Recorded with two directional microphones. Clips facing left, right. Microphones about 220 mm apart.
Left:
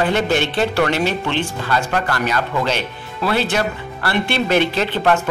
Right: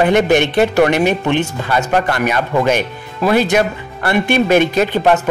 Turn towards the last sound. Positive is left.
turn(degrees=-15)  # may be behind; listen again after turning